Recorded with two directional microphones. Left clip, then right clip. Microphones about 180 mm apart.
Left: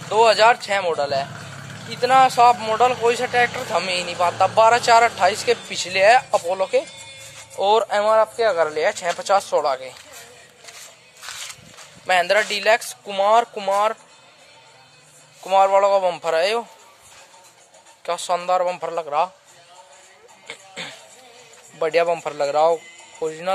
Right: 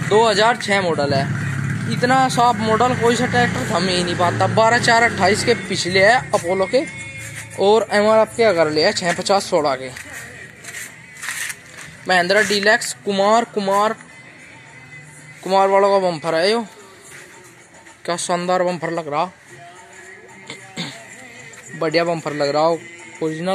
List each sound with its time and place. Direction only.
0.1 s speech: centre (ahead or behind)
7.5 s speech: 5° right (ahead or behind)
12.1 s speech: 5° left (ahead or behind)
13.6 s speech: 5° left (ahead or behind)
15.4 s speech: centre (ahead or behind)
18.0 s speech: 10° right (ahead or behind)
20.4 s music: 20° left (ahead or behind)
21.7 s speech: 15° left (ahead or behind)